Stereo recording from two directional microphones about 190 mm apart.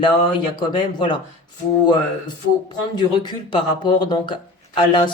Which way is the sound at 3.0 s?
25° left (ahead or behind).